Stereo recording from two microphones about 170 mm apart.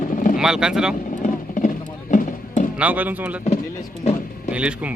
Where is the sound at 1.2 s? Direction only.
50° left (ahead or behind).